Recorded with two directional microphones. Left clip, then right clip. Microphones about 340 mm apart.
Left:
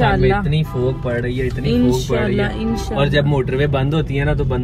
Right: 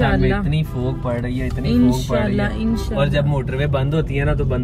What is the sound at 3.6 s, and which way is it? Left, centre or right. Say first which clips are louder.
Speech: left 2 dB; centre.